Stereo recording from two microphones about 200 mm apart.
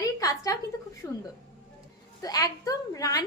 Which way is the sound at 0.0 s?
15° left (ahead or behind).